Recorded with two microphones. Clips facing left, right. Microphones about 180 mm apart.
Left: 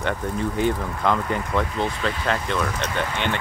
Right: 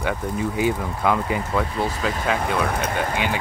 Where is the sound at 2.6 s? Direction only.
60° right (ahead or behind).